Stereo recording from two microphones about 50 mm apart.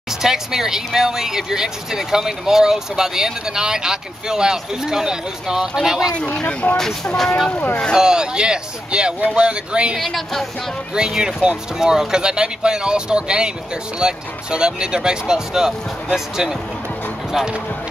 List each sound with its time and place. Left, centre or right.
0.2 s speech: centre
6.4 s speech: left
6.8 s speech: centre
7.5 s speech: left
7.9 s speech: centre
9.9 s a woman's voice: centre
11.0 s speech: centre